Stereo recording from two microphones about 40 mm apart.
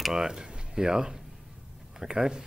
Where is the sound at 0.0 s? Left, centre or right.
Centre.